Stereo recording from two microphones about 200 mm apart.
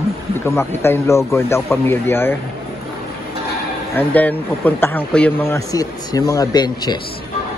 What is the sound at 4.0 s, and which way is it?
Speech, 10° left (ahead or behind).